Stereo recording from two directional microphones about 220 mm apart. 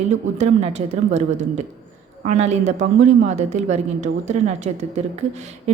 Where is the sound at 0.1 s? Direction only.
30° right (ahead or behind).